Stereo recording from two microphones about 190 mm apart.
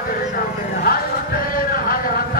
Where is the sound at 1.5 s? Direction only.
50° left (ahead or behind).